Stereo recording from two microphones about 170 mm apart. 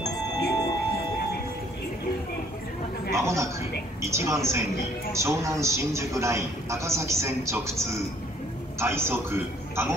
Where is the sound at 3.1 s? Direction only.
15° right (ahead or behind).